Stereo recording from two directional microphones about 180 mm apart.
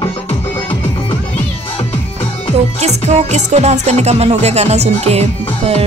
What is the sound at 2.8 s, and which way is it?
Music, 40° right (ahead or behind).